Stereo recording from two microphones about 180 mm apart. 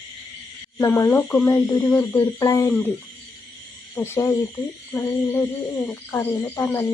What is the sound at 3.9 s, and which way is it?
Speech, 15° left (ahead or behind).